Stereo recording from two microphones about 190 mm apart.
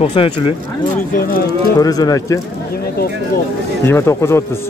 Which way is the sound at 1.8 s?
20° left (ahead or behind).